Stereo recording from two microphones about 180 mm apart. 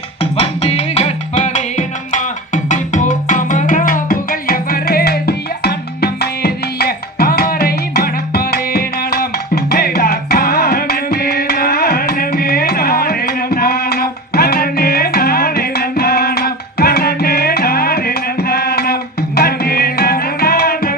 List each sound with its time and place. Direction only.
0.2 s music: 35° left (ahead or behind); by 20.9 s 60° left (ahead or behind)